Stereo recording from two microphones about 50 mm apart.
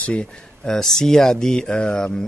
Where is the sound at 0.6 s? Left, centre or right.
Centre.